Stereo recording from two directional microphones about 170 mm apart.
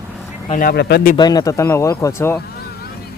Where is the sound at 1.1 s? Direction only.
25° left (ahead or behind).